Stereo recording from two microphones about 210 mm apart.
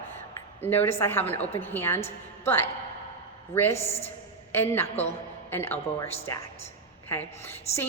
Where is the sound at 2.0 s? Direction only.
30° left (ahead or behind).